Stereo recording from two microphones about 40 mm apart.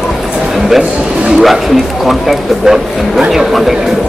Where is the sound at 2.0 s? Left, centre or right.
Centre.